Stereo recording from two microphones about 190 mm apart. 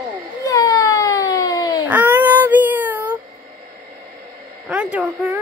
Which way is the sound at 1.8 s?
10° right (ahead or behind).